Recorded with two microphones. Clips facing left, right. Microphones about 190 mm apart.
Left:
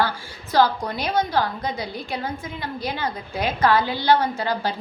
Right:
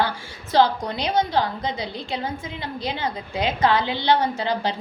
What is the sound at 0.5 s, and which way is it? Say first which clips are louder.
A woman's voice: right 1 dB; 20° right (ahead or behind).